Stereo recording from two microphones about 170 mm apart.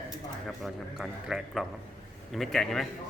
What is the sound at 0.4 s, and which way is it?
Speech, centre (ahead or behind).